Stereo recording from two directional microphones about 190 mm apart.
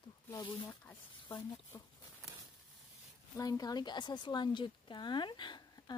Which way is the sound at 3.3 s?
15° left (ahead or behind).